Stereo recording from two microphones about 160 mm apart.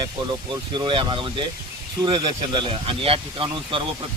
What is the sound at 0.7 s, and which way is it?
Speech, 30° right (ahead or behind).